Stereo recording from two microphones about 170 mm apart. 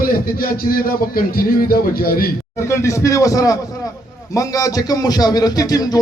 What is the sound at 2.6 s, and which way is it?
A man's voice, 15° left (ahead or behind).